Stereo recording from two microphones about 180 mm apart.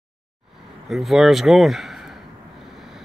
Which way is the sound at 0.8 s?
Centre (ahead or behind).